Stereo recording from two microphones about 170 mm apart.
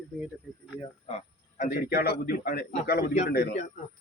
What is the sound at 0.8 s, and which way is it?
A man's voice, 40° left (ahead or behind).